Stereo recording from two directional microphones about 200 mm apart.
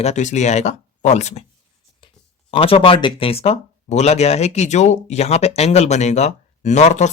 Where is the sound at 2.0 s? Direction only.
25° left (ahead or behind).